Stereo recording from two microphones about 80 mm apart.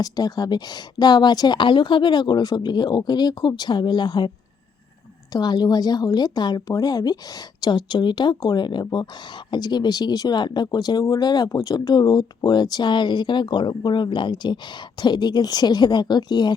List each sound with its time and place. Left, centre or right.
0.0 s speech: left
5.3 s speech: left